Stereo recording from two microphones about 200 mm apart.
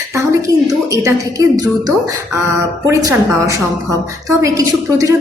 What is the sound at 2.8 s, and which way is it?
A woman's voice, 15° right (ahead or behind).